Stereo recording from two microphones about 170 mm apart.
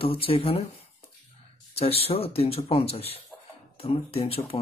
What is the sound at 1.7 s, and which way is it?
Speech, 35° left (ahead or behind).